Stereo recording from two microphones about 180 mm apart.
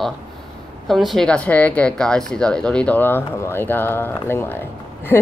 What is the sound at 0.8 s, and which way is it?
A woman's voice, centre (ahead or behind).